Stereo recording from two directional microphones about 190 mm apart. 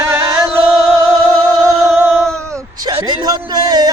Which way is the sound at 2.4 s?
20° right (ahead or behind).